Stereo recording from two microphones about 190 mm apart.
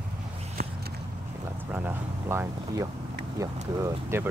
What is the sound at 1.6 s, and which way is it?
Speech, 10° right (ahead or behind).